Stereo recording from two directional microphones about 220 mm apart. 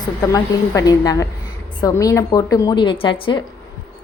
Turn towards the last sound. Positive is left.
turn(degrees=20)  # may be behind; listen again after turning